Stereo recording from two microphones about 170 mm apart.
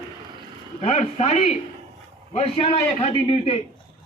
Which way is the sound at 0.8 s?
40° left (ahead or behind).